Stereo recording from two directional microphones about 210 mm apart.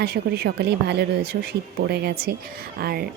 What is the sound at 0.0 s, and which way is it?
Speech, 50° right (ahead or behind).